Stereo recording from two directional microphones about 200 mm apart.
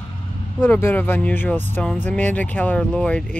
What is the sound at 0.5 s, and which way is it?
Speech, 10° left (ahead or behind).